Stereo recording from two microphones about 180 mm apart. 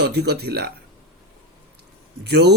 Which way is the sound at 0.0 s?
65° right (ahead or behind).